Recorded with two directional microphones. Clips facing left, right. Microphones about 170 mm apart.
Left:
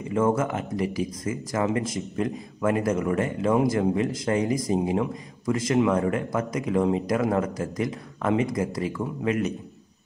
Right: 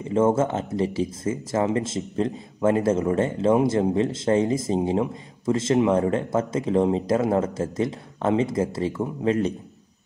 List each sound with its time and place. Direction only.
0.0 s speech: 25° right (ahead or behind)